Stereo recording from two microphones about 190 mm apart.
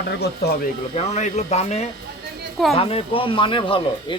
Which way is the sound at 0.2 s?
60° left (ahead or behind).